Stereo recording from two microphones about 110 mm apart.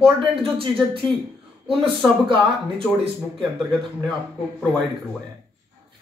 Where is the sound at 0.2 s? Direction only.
55° right (ahead or behind).